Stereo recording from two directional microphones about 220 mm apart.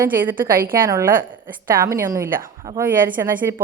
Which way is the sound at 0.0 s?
10° right (ahead or behind).